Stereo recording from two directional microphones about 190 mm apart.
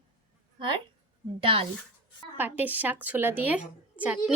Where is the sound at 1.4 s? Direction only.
30° right (ahead or behind).